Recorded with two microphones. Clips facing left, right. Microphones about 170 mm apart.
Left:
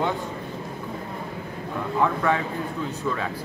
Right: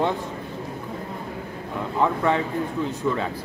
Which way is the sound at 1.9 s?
20° right (ahead or behind).